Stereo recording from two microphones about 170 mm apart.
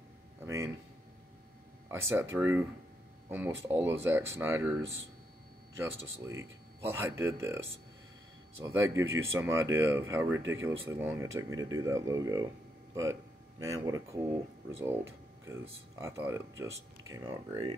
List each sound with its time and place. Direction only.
1.9 s speech: 15° right (ahead or behind)
5.8 s speech: 15° right (ahead or behind)
17.1 s speech: 25° right (ahead or behind)